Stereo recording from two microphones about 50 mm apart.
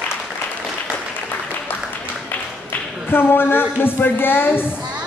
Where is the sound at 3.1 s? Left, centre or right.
Left.